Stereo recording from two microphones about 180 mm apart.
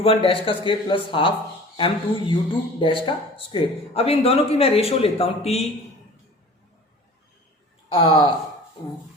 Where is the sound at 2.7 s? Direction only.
30° left (ahead or behind).